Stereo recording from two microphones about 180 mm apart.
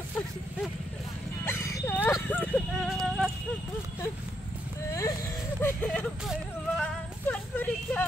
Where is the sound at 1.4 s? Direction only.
15° left (ahead or behind).